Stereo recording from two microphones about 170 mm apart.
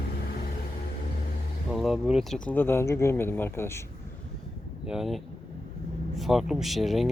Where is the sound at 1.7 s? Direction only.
Centre (ahead or behind); by 3.8 s 15° left (ahead or behind).